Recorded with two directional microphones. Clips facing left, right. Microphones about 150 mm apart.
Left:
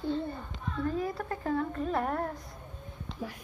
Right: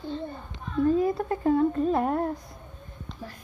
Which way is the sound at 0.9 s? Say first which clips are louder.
Right 8 dB; 25° right (ahead or behind).